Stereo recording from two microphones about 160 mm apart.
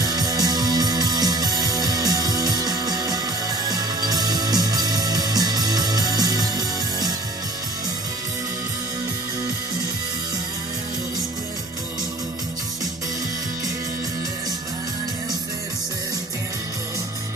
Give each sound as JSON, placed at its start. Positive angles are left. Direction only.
{"t": 0.0, "sound": "music", "side_deg": -25}